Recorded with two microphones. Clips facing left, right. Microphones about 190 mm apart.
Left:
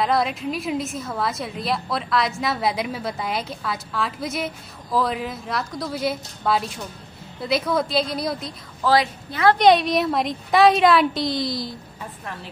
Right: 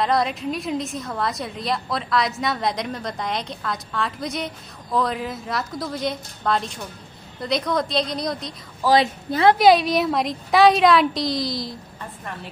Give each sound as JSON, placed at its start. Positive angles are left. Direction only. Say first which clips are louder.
{"t": 0.0, "sound": "a woman's voice", "louder": "even", "side_deg": 0}
{"t": 9.0, "sound": "a woman's voice", "louder": "right 3 dB", "side_deg": -30}
{"t": 9.6, "sound": "a woman's voice", "louder": "right 1 dB", "side_deg": 0}